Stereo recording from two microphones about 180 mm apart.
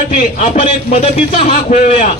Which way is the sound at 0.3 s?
45° left (ahead or behind).